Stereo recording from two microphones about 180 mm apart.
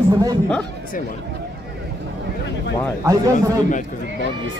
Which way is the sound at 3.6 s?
45° left (ahead or behind).